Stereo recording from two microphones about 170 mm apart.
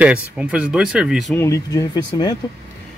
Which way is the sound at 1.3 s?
15° left (ahead or behind).